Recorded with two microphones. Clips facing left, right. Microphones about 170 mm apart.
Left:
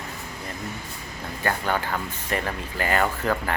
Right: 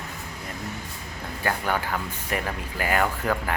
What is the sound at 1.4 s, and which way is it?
Speech, 10° right (ahead or behind).